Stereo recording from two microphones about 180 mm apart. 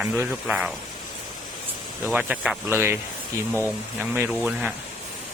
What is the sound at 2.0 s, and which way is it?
Speech, 10° right (ahead or behind).